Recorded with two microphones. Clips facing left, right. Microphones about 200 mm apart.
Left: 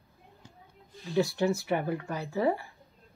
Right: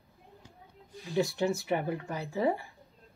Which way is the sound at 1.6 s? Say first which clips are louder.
Left 1 dB; 15° right (ahead or behind).